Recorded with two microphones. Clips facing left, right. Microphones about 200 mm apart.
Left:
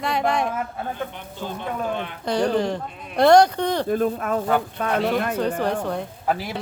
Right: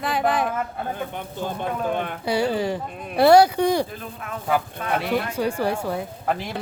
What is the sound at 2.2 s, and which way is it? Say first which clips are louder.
Speech: left 2 dB; 5° right (ahead or behind).